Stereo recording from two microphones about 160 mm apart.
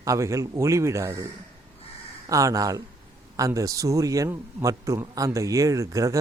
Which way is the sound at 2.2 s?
20° right (ahead or behind).